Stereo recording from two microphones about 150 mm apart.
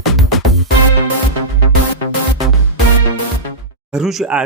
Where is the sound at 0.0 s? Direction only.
Centre (ahead or behind).